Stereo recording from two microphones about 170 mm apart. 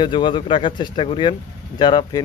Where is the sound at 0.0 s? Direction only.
30° left (ahead or behind).